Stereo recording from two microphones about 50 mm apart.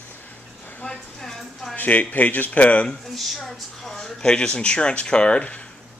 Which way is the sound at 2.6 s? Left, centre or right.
Left.